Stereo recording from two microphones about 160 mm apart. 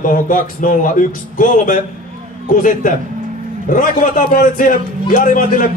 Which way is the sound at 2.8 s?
60° left (ahead or behind).